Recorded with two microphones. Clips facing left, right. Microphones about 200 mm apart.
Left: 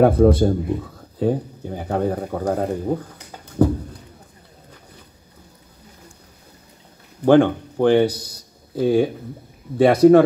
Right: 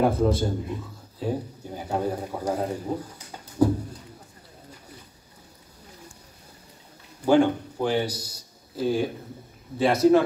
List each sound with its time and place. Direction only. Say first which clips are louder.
0.0 s speech: left 8 dB; 60° left (ahead or behind)
7.2 s speech: left 5 dB; 55° left (ahead or behind)